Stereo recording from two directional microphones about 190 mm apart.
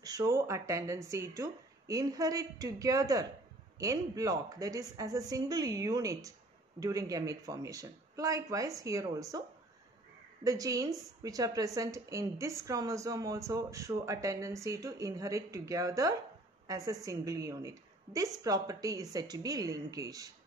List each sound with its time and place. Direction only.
0.0 s a woman's voice: 20° right (ahead or behind)
10.4 s a woman's voice: 20° right (ahead or behind)